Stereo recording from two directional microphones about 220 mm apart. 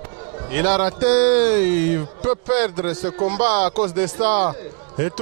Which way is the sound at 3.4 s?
15° right (ahead or behind).